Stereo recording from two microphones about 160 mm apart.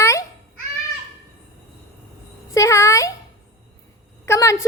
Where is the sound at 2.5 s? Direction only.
20° left (ahead or behind).